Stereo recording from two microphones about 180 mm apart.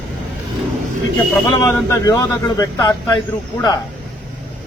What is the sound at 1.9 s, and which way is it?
Speech, 20° left (ahead or behind).